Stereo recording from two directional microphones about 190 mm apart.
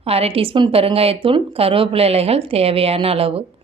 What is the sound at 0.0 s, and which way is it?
Speech, 30° right (ahead or behind).